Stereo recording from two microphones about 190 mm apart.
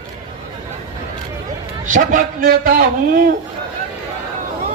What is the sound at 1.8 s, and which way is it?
A man's voice, 45° right (ahead or behind).